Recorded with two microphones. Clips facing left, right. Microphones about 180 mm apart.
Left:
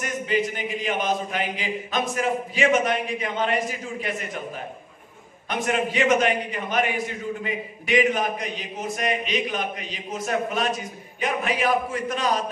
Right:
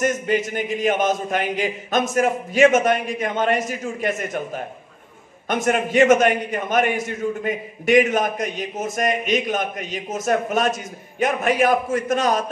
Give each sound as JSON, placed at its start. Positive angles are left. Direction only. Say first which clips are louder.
{"t": 0.0, "sound": "a man's voice", "louder": "right 4 dB", "side_deg": -45}
{"t": 5.5, "sound": "a man's voice", "louder": "right 4 dB", "side_deg": -45}